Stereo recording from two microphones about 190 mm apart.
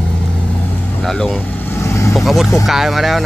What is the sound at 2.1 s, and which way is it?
Speech, centre (ahead or behind).